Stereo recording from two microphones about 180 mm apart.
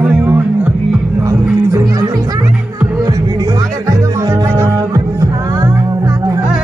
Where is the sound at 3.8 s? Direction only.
20° right (ahead or behind).